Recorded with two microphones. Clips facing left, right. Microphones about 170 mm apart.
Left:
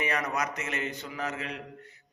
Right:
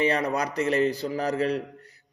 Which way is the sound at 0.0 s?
30° right (ahead or behind).